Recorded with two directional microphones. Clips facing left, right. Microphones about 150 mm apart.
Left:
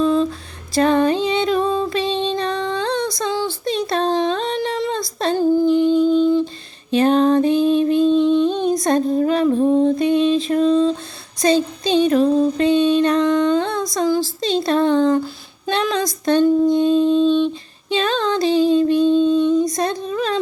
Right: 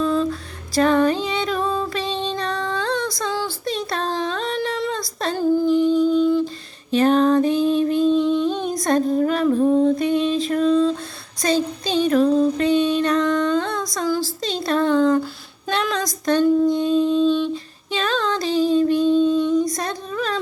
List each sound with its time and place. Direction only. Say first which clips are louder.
0.0 s music: left 3 dB; 25° left (ahead or behind)
6.1 s humming: left 2 dB; 25° left (ahead or behind)
6.9 s music: left 1 dB; 25° left (ahead or behind)
8.1 s a sound: left 3 dB; 25° left (ahead or behind)
12.0 s music: right 1 dB; 25° left (ahead or behind)
15.7 s a sound: left 3 dB; 25° left (ahead or behind)